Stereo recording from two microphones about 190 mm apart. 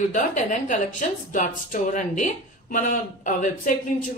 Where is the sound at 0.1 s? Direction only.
40° left (ahead or behind).